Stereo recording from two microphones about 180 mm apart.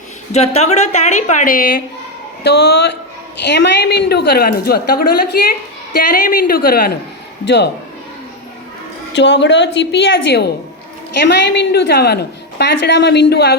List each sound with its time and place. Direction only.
0.3 s a woman's voice: 35° left (ahead or behind); by 1.8 s 50° left (ahead or behind)
2.4 s a woman's voice: 65° left (ahead or behind)
7.4 s a woman's voice: 70° left (ahead or behind)
9.1 s a woman's voice: 75° left (ahead or behind)